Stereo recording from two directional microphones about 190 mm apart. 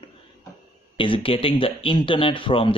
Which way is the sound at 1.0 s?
30° left (ahead or behind).